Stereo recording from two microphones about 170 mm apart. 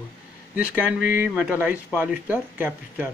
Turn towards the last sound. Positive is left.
turn(degrees=-10)  # may be behind; listen again after turning